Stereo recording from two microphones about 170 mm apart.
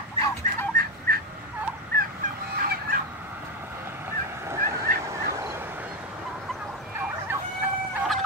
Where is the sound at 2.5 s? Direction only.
60° right (ahead or behind).